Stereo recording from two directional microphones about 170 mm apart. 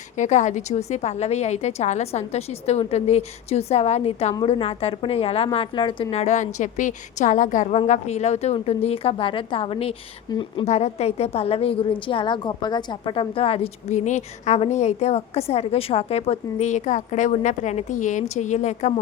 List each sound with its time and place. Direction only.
0.2 s a woman's voice: 45° left (ahead or behind); by 10.7 s 25° left (ahead or behind)
10.7 s a woman's voice: 40° left (ahead or behind)